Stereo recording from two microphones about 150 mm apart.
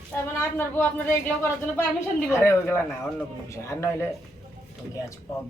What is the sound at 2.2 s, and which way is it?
Speech, 15° left (ahead or behind).